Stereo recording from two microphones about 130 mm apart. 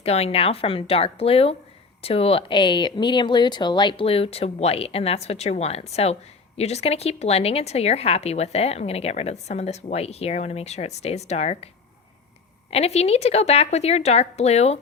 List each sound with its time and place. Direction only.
0.0 s speech: 50° left (ahead or behind)
12.7 s speech: 55° left (ahead or behind)